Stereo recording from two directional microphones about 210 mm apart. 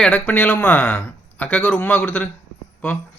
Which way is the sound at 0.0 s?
5° left (ahead or behind).